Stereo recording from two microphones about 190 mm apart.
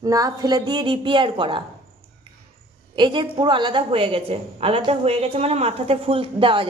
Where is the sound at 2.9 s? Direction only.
25° right (ahead or behind).